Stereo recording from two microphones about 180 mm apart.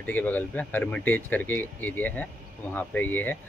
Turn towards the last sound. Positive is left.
turn(degrees=10)  # may be behind; listen again after turning